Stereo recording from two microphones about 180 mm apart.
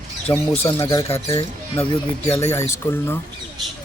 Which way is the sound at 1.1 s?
35° left (ahead or behind).